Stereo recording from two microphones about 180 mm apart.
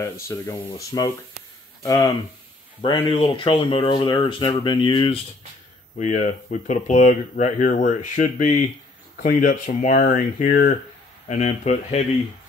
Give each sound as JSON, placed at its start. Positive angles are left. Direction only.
{"t": 0.0, "sound": "speech", "side_deg": 15}
{"t": 5.9, "sound": "speech", "side_deg": 40}
{"t": 11.2, "sound": "speech", "side_deg": 40}